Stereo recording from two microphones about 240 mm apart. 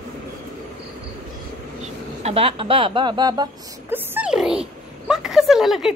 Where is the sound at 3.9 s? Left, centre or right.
Centre.